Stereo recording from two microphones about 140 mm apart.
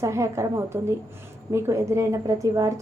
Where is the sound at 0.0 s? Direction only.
20° right (ahead or behind).